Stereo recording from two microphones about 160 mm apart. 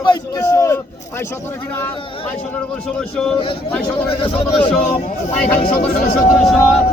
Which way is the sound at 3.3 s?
35° left (ahead or behind).